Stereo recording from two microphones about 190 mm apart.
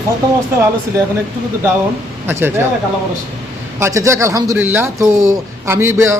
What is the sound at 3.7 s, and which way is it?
Speech, 15° right (ahead or behind).